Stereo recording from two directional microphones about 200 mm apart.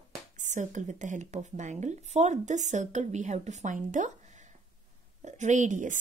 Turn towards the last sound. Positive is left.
turn(degrees=-40)  # may be behind; listen again after turning